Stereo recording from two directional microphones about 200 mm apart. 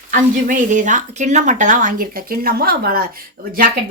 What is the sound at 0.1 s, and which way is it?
A woman's voice, 40° right (ahead or behind).